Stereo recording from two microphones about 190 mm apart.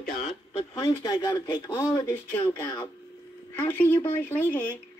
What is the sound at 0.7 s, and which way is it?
Speech, 20° left (ahead or behind).